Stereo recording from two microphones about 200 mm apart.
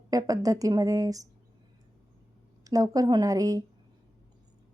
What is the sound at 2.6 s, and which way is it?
A woman's voice, 15° right (ahead or behind).